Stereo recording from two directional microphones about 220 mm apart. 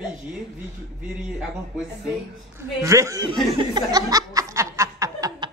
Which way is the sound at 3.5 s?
20° right (ahead or behind).